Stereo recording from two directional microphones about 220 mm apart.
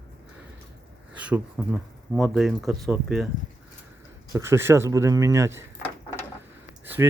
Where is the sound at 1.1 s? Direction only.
5° right (ahead or behind).